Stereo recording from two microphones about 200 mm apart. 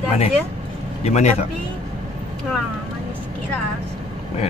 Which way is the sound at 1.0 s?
35° left (ahead or behind).